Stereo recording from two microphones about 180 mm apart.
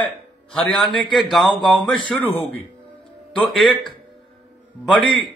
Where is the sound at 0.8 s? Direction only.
25° left (ahead or behind).